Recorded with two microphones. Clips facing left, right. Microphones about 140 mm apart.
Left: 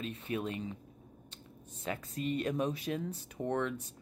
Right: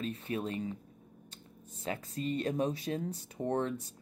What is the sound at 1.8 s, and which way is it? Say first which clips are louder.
Speech: right 1 dB; 35° right (ahead or behind).